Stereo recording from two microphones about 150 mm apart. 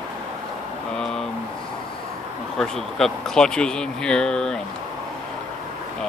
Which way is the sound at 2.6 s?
Centre (ahead or behind).